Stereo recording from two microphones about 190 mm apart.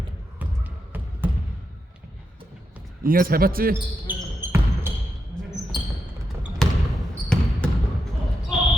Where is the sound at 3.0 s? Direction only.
50° right (ahead or behind).